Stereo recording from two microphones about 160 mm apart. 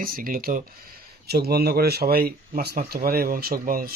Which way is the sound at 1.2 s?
85° right.